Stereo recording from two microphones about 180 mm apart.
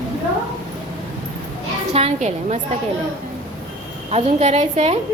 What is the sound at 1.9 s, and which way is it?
Speech, 35° right (ahead or behind).